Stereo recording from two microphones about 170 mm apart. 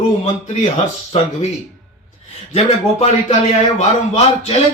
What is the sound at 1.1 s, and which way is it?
Speech, 35° left (ahead or behind).